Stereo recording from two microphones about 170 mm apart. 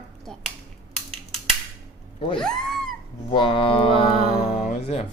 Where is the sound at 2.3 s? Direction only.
5° left (ahead or behind).